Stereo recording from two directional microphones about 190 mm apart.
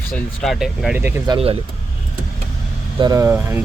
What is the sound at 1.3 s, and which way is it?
Speech, 30° right (ahead or behind).